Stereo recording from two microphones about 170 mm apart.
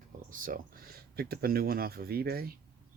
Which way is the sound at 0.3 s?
55° right (ahead or behind).